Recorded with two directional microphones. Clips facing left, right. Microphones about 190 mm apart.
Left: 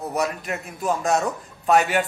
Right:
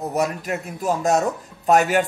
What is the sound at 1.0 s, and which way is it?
Speech, 40° right (ahead or behind).